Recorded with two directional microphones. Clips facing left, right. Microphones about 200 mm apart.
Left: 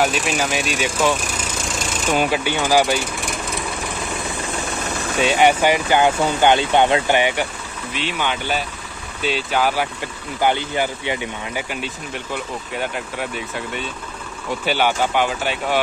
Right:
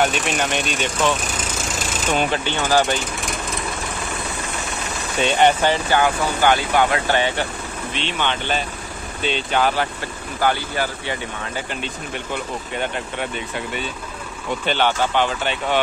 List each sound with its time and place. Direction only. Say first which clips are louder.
0.0 s speech: left 1 dB; centre (ahead or behind)
5.2 s speech: left 1 dB; 5° left (ahead or behind)
10.4 s speech: left 2 dB; 20° left (ahead or behind)
14.6 s speech: left 1 dB; 10° left (ahead or behind)